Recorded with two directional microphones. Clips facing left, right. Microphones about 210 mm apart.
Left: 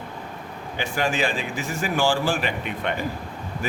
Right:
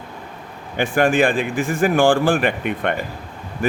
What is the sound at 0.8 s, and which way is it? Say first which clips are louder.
A man's voice: right 8 dB; 55° right (ahead or behind).